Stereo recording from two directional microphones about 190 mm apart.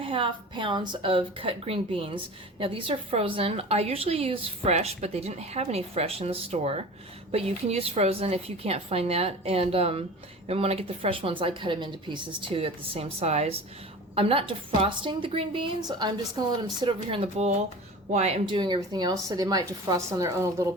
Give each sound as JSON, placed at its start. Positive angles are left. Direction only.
{"t": 0.0, "sound": "a woman's voice", "side_deg": -25}
{"t": 18.5, "sound": "a woman's voice", "side_deg": -25}